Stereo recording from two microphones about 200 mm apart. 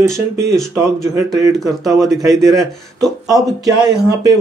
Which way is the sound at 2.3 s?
15° right (ahead or behind).